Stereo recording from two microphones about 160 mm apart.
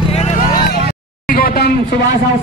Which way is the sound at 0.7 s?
65° left (ahead or behind).